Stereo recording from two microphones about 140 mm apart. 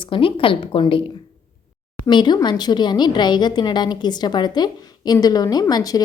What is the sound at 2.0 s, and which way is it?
A woman's voice, 30° left (ahead or behind).